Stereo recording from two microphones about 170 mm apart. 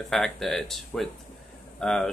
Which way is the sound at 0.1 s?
Centre (ahead or behind).